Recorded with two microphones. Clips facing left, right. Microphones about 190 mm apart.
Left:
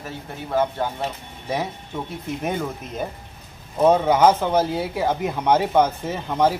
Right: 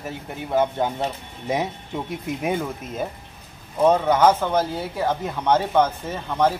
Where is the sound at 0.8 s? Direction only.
20° right (ahead or behind).